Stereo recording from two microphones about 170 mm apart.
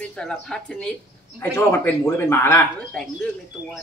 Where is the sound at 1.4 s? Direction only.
15° left (ahead or behind).